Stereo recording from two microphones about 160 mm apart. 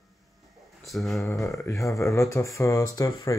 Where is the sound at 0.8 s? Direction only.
Centre (ahead or behind).